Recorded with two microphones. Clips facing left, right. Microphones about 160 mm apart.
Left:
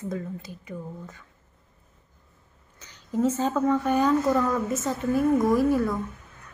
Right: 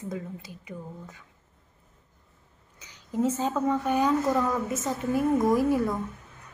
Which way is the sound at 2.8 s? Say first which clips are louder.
Left 2 dB; 10° right (ahead or behind).